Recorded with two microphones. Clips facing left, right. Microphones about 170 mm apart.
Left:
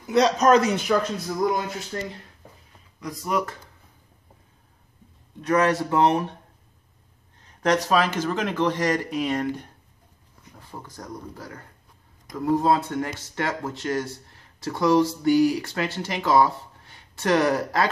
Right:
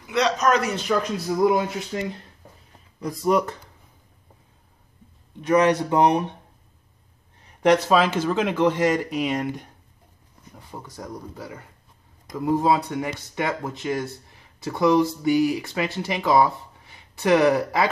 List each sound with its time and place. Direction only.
0.0 s a man's voice: 40° left (ahead or behind)
0.7 s speech: centre (ahead or behind)
1.5 s speech: 10° right (ahead or behind)
3.0 s speech: 30° right (ahead or behind)
5.5 s speech: 15° right (ahead or behind)
7.6 s speech: 10° right (ahead or behind)
11.0 s speech: 5° right (ahead or behind)
15.2 s speech: 5° right (ahead or behind)
17.2 s speech: 5° right (ahead or behind)